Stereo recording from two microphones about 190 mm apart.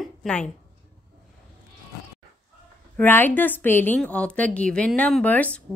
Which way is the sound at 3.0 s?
10° left (ahead or behind).